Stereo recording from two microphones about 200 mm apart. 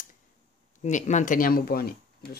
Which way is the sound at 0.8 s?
35° left (ahead or behind).